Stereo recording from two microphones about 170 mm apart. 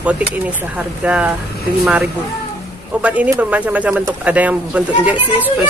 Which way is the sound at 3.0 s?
10° right (ahead or behind).